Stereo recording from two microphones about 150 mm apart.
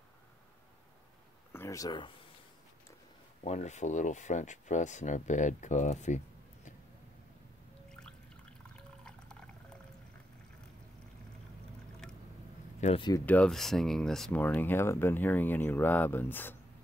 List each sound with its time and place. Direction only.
1.5 s speech: 20° left (ahead or behind)
3.4 s speech: 50° left (ahead or behind)
8.7 s water: 5° left (ahead or behind)
12.0 s boat: 5° left (ahead or behind)
12.8 s speech: 50° left (ahead or behind)
13.2 s speech: 10° left (ahead or behind)